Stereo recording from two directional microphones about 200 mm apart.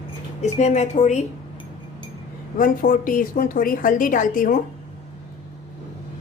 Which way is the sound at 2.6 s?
40° left (ahead or behind).